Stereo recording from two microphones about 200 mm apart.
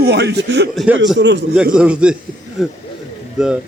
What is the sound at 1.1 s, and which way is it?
Speech, 60° right (ahead or behind).